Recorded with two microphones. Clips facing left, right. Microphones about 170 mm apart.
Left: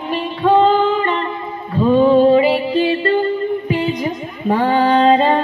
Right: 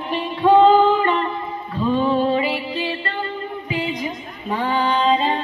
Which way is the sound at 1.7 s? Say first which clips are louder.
Left 7 dB; 35° left (ahead or behind).